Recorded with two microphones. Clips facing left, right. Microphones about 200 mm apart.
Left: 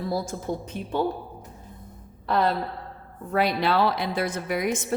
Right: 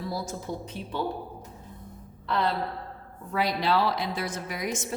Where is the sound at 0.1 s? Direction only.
55° left (ahead or behind).